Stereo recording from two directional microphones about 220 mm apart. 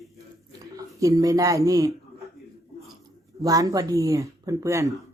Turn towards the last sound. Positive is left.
turn(degrees=-15)  # may be behind; listen again after turning